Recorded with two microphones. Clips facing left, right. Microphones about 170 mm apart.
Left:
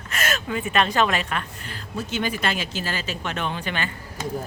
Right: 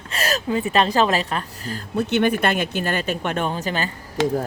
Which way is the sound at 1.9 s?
65° right (ahead or behind).